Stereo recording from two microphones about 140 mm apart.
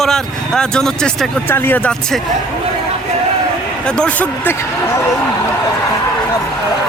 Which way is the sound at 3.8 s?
10° left (ahead or behind).